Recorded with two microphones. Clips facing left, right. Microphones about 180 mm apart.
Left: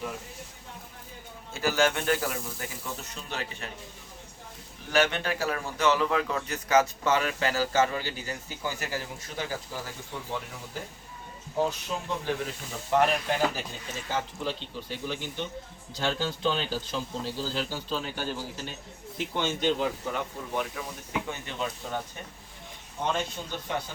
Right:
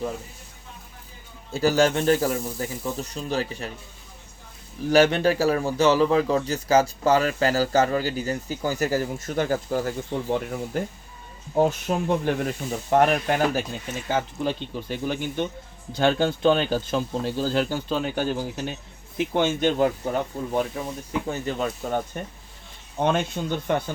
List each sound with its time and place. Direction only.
1.5 s a man's voice: 35° right (ahead or behind)
4.9 s a man's voice: 35° right (ahead or behind)
23.0 s speech: 60° right (ahead or behind)